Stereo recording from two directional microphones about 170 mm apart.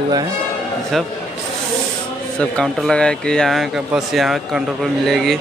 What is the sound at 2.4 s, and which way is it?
Speech, 5° left (ahead or behind).